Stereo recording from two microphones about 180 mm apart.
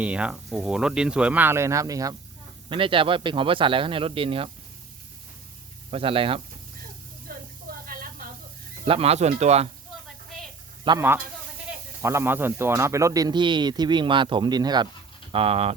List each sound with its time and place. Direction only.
0.0 s speech: 5° right (ahead or behind); by 4.4 s 30° right (ahead or behind)
5.9 s speech: 30° right (ahead or behind)
7.3 s a sound: 55° right (ahead or behind)
7.9 s snake: 50° right (ahead or behind)
8.8 s speech: 35° right (ahead or behind)
10.8 s speech: 15° right (ahead or behind); by 15.7 s 35° right (ahead or behind)